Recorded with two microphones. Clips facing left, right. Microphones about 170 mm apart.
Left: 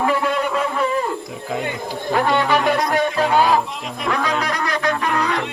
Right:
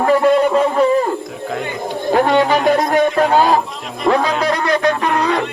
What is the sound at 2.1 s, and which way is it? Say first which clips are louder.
Speech: right 4 dB; 45° right (ahead or behind).